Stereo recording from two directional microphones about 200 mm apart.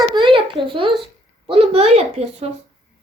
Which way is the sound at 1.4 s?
30° right (ahead or behind).